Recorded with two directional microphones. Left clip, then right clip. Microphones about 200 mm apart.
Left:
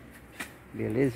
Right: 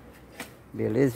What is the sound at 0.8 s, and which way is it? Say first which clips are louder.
Speech: right 4 dB; 15° right (ahead or behind).